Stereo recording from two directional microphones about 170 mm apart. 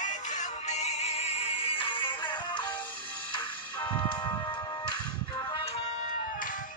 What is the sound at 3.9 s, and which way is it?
Music, 25° left (ahead or behind).